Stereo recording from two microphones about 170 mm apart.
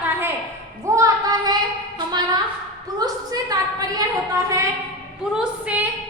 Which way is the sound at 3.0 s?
25° right (ahead or behind).